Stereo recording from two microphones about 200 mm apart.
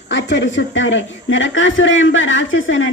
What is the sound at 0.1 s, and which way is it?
A woman's voice, 65° left (ahead or behind).